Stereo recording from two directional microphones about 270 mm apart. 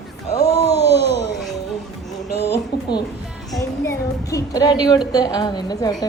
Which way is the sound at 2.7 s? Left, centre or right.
Left.